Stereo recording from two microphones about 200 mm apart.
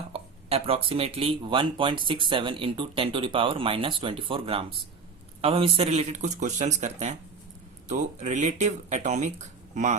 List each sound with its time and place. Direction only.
0.1 s speech: 30° right (ahead or behind)